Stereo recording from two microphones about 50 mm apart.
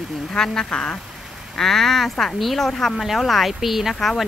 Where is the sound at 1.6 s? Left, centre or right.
Centre.